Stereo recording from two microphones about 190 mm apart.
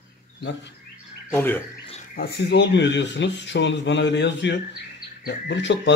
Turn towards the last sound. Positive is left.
turn(degrees=70)  # may be behind; listen again after turning